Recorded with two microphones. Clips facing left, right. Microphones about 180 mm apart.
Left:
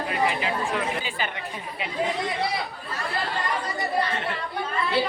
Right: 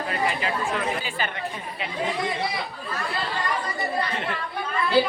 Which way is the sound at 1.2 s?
15° left (ahead or behind).